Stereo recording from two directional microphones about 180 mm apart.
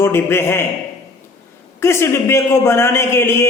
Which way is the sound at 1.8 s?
15° left (ahead or behind).